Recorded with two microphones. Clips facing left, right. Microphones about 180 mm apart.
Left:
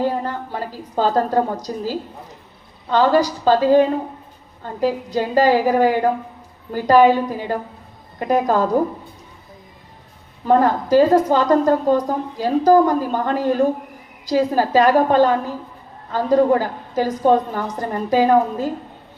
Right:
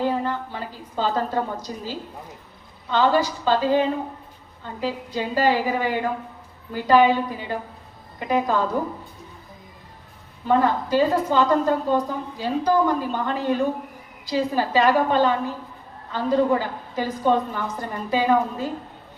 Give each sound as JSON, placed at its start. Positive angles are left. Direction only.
{"t": 0.3, "sound": "a woman's voice", "side_deg": 45}
{"t": 10.4, "sound": "a woman's voice", "side_deg": 45}